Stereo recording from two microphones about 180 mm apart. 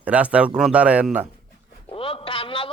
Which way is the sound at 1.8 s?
30° left (ahead or behind).